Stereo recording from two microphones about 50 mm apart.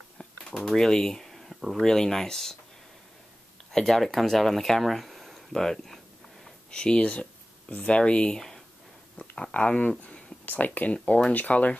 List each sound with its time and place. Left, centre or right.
0.6 s speech: centre
3.7 s speech: centre
6.7 s speech: centre
8.4 s a sound: centre
9.5 s speech: left